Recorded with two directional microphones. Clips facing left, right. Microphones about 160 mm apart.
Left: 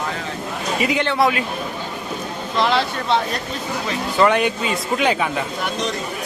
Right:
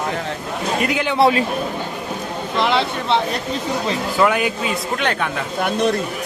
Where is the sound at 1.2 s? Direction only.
30° right (ahead or behind).